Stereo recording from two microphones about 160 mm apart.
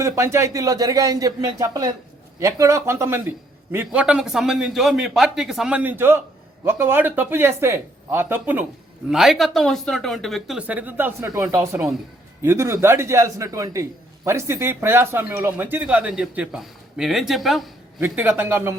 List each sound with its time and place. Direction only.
0.0 s speech: 20° right (ahead or behind); by 17.7 s centre (ahead or behind)
18.0 s speech: 10° right (ahead or behind)